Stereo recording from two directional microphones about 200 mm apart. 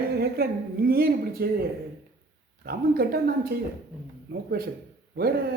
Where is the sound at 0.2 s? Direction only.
50° right (ahead or behind).